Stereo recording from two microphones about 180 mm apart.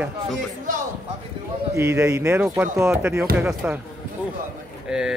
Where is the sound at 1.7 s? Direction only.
15° right (ahead or behind).